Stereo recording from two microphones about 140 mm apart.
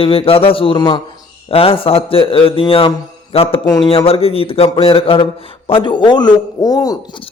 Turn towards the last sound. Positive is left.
turn(degrees=25)  # may be behind; listen again after turning